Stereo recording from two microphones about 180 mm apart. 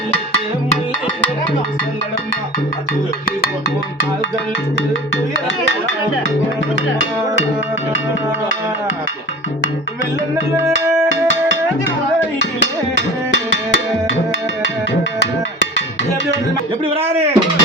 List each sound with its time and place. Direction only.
12.5 s music: 85° left
16.8 s speech: 30° right (ahead or behind)